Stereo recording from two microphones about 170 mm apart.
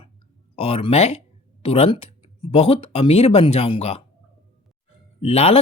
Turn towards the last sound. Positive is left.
turn(degrees=35)  # may be behind; listen again after turning